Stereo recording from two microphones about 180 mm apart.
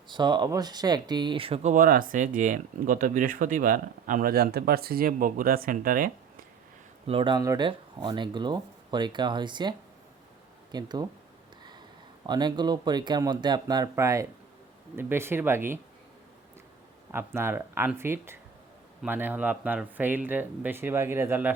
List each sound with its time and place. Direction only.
0.1 s speech: 25° right (ahead or behind)
1.7 s speech: 50° right (ahead or behind)
7.1 s speech: 30° right (ahead or behind)
12.2 s speech: 25° right (ahead or behind)
17.1 s speech: 15° right (ahead or behind)